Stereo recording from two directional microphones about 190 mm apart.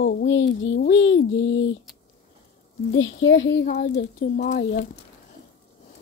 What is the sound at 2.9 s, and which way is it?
Speech, 80° left.